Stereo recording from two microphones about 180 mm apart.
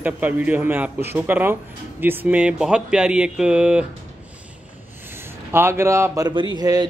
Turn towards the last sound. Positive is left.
turn(degrees=-20)  # may be behind; listen again after turning